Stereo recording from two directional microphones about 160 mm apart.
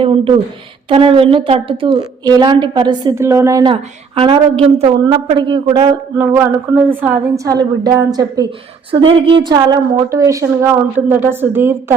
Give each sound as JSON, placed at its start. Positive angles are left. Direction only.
{"t": 0.0, "sound": "a sound", "side_deg": -35}
{"t": 0.9, "sound": "a woman's voice", "side_deg": -35}
{"t": 3.2, "sound": "a woman's voice", "side_deg": -15}
{"t": 3.7, "sound": "a woman's voice", "side_deg": -35}
{"t": 6.1, "sound": "a woman's voice", "side_deg": -15}